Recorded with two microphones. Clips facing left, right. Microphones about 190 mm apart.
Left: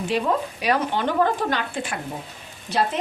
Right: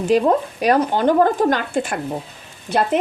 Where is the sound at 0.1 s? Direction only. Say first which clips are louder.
Right 8 dB; 45° right (ahead or behind).